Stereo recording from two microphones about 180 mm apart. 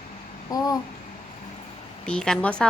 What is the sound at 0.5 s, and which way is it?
Babbling, 20° left (ahead or behind).